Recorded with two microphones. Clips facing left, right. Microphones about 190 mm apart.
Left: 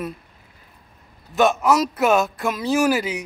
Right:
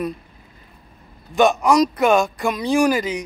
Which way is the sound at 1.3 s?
Centre (ahead or behind).